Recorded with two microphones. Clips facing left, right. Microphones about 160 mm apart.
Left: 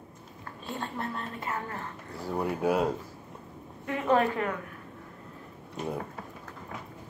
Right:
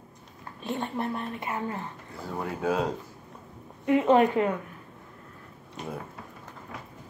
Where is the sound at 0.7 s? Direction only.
20° right (ahead or behind).